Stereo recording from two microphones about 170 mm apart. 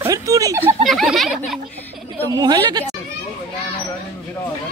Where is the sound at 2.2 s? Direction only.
20° right (ahead or behind).